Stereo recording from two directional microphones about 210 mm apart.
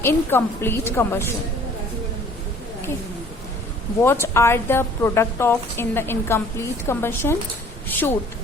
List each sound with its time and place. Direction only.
0.0 s a woman's voice: 10° left (ahead or behind)
4.0 s a woman's voice: 10° left (ahead or behind)